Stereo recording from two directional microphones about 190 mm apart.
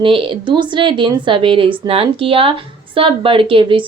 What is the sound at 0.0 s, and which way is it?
A woman's voice, 25° right (ahead or behind).